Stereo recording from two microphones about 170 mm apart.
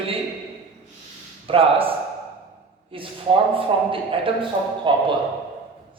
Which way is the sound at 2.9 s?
30° right (ahead or behind).